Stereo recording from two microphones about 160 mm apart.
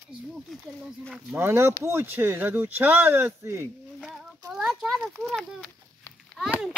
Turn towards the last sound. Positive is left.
turn(degrees=-5)  # may be behind; listen again after turning